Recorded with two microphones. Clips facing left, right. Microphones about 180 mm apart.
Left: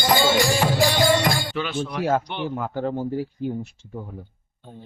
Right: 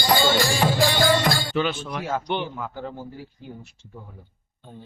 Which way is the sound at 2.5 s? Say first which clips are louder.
Left 7 dB; 50° left (ahead or behind).